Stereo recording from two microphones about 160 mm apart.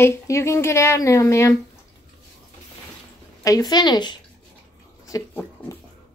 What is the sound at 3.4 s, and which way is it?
A woman's voice, 20° left (ahead or behind).